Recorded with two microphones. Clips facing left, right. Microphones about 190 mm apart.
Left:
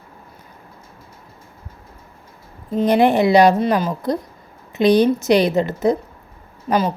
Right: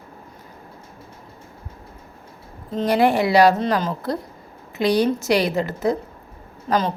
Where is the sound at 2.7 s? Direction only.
20° left (ahead or behind).